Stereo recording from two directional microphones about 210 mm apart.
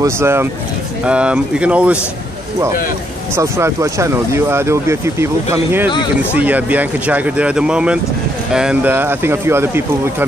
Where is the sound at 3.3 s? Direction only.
10° right (ahead or behind).